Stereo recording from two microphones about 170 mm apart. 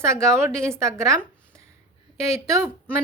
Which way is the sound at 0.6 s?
15° right (ahead or behind).